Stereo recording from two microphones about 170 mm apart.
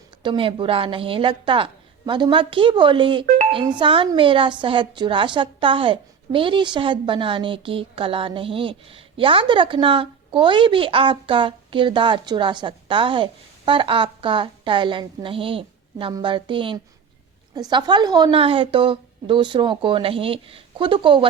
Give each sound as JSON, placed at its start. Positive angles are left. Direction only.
{"t": 0.2, "sound": "a woman's voice", "side_deg": -30}